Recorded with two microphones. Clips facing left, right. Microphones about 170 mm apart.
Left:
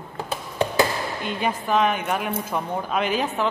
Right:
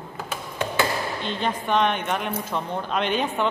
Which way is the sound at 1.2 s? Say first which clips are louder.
Left 4 dB; 10° left (ahead or behind).